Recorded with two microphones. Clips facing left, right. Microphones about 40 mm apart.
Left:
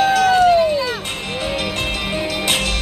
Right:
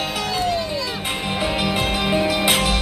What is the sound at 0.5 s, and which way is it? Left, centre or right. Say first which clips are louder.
Music: left 9 dB; left.